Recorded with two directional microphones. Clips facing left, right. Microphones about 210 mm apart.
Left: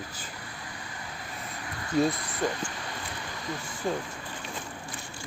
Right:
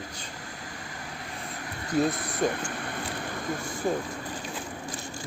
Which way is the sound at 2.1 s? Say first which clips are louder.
Right 3 dB; 50° right (ahead or behind).